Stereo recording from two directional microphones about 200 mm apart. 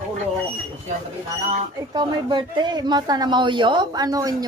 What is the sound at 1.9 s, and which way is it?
Speech, 20° right (ahead or behind).